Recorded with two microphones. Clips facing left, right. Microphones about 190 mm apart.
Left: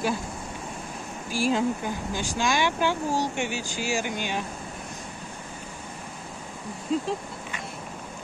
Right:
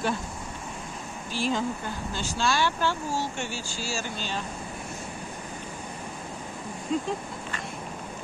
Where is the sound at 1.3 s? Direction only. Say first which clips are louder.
Left 4 dB; 10° left (ahead or behind).